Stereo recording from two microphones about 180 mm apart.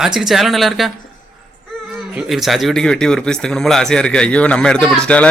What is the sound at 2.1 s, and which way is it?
Speech, centre (ahead or behind).